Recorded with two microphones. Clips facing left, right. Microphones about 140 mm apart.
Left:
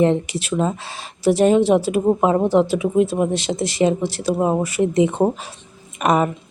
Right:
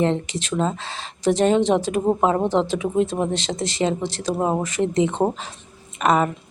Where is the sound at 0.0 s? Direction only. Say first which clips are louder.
Left 4 dB; 10° left (ahead or behind).